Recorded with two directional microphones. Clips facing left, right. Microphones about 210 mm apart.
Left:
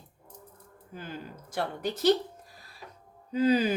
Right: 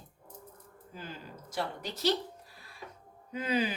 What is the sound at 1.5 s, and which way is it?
Speech, 55° left (ahead or behind).